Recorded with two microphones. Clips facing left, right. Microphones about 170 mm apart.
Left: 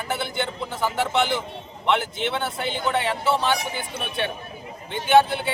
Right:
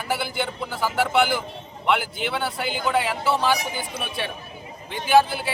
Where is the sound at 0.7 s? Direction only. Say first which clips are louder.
Even; 20° left (ahead or behind).